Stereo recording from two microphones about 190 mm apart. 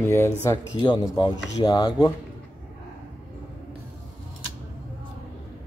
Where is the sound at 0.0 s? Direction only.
10° left (ahead or behind).